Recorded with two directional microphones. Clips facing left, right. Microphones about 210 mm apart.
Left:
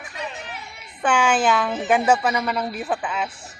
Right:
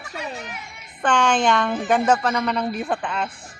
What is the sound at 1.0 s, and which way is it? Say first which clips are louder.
Speech: even; 10° left (ahead or behind).